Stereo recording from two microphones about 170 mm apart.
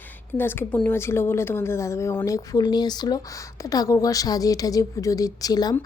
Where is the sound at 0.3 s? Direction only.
10° left (ahead or behind).